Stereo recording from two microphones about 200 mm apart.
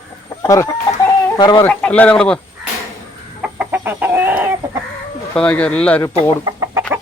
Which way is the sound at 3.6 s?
10° right (ahead or behind).